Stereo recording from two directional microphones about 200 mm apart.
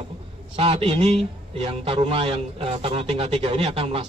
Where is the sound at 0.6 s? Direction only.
25° right (ahead or behind).